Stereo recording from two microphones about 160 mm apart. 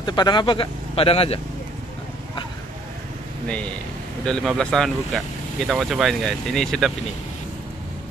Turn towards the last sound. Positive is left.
turn(degrees=0)  # may be behind; listen again after turning